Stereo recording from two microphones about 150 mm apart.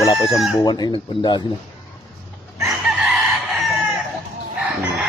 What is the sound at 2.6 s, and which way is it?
Chicken, centre (ahead or behind).